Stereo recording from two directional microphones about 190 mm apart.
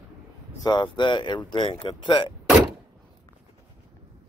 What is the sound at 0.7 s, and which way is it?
Speech, 25° left (ahead or behind).